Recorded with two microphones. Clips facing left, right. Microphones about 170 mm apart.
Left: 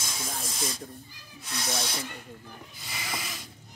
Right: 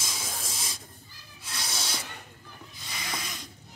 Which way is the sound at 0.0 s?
Centre (ahead or behind).